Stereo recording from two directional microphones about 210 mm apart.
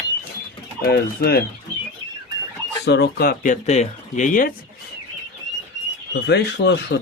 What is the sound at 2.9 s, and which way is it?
Speech, 50° left (ahead or behind).